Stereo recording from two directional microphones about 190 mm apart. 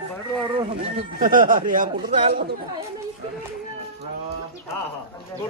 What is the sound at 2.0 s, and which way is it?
Speech, 30° right (ahead or behind).